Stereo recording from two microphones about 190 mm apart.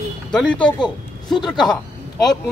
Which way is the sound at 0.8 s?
25° left (ahead or behind).